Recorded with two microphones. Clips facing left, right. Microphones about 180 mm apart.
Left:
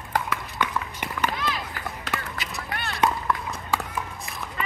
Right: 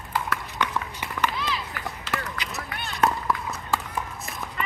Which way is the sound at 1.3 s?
50° left (ahead or behind).